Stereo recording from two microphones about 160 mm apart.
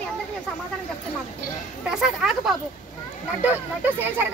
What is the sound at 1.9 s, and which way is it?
Speech, 5° right (ahead or behind).